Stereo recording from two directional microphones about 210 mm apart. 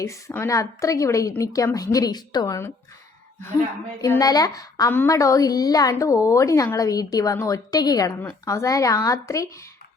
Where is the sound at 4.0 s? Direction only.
15° left (ahead or behind).